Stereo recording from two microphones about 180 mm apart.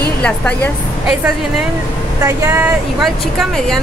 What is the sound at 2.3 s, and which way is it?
Speech, 15° right (ahead or behind).